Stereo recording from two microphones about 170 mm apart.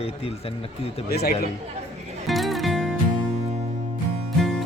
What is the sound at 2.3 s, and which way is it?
Music, centre (ahead or behind).